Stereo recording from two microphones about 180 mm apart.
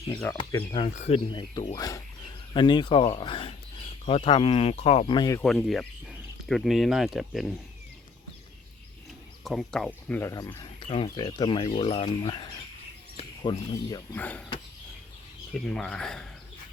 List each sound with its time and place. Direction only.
0.3 s speech: 25° left (ahead or behind)
5.4 s speech: centre (ahead or behind)
9.4 s speech: centre (ahead or behind); by 11.1 s 35° left (ahead or behind)
11.1 s speech: 20° left (ahead or behind)
14.2 s speech: 10° left (ahead or behind)
15.5 s speech: 5° left (ahead or behind)